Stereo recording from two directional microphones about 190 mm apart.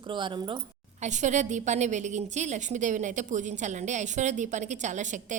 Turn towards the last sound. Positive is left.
turn(degrees=-40)  # may be behind; listen again after turning